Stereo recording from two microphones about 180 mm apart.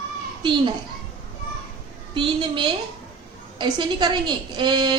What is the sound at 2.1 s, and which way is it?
A woman's voice, 25° right (ahead or behind).